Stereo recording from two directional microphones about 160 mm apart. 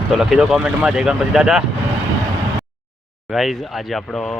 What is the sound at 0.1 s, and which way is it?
Speech, 5° right (ahead or behind).